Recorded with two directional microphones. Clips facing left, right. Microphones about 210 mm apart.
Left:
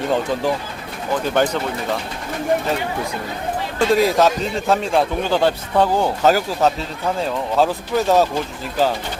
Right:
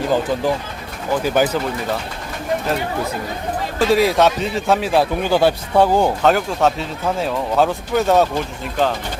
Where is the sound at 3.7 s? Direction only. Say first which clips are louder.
Right 1 dB; centre (ahead or behind).